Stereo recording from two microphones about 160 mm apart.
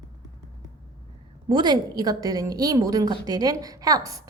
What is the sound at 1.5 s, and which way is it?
A woman's voice, 30° right (ahead or behind).